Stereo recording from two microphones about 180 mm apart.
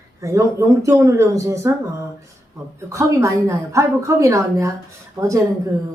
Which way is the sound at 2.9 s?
15° right (ahead or behind).